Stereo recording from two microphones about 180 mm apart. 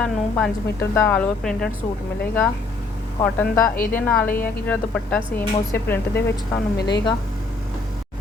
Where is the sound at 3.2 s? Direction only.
10° left (ahead or behind).